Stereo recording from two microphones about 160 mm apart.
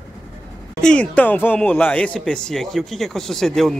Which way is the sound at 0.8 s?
5° left (ahead or behind).